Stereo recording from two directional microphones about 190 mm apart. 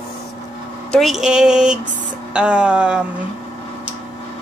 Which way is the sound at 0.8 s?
Centre (ahead or behind).